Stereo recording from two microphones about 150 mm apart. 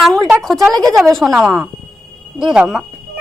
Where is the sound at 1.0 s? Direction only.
Centre (ahead or behind).